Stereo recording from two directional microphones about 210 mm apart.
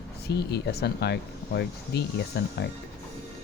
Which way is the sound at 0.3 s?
50° left (ahead or behind).